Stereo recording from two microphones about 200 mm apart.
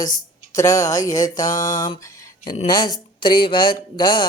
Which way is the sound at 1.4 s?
40° left (ahead or behind).